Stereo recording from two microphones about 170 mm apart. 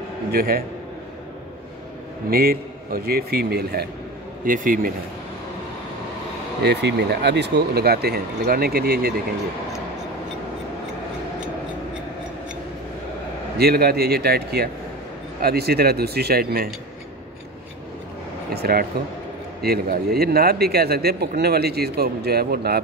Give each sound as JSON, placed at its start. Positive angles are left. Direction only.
{"t": 0.3, "sound": "a man's voice", "side_deg": -65}
{"t": 2.2, "sound": "a man's voice", "side_deg": -60}
{"t": 4.5, "sound": "a man's voice", "side_deg": -55}
{"t": 6.6, "sound": "a man's voice", "side_deg": -80}
{"t": 13.6, "sound": "a man's voice", "side_deg": -65}
{"t": 18.5, "sound": "a man's voice", "side_deg": -65}